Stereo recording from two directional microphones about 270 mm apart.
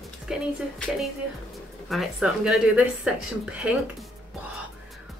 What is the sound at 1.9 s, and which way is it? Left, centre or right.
A woman's voice, centre.